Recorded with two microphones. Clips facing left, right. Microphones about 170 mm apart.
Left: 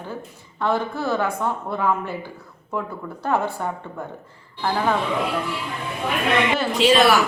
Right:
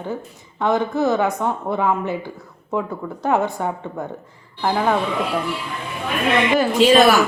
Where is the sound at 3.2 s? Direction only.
15° right (ahead or behind).